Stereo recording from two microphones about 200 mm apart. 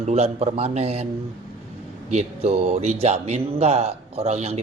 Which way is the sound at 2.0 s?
35° right (ahead or behind).